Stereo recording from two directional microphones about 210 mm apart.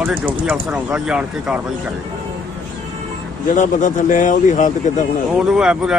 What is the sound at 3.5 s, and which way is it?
Speech, 40° left (ahead or behind).